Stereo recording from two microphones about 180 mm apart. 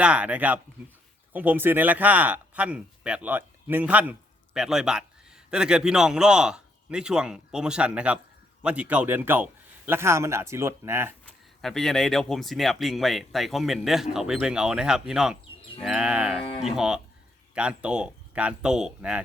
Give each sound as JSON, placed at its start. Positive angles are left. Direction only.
{"t": 0.0, "sound": "a man's voice", "side_deg": -5}
{"t": 11.6, "sound": "speech", "side_deg": 0}
{"t": 16.4, "sound": "speech", "side_deg": 30}
{"t": 16.6, "sound": "speech", "side_deg": -5}